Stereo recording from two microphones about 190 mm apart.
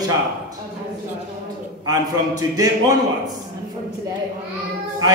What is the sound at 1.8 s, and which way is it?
Speech, 20° right (ahead or behind).